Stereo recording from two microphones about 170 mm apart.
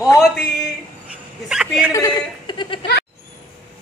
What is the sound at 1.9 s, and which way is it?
Speech, 25° left (ahead or behind).